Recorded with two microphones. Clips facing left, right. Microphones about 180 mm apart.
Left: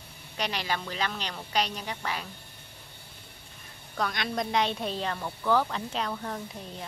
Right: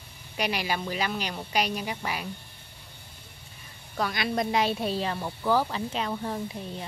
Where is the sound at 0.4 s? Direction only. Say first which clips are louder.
Right 3 dB; 10° right (ahead or behind).